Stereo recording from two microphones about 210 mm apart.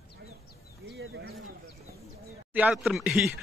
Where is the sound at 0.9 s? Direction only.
55° right (ahead or behind).